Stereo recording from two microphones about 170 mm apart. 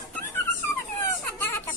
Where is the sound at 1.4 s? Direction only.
15° left (ahead or behind).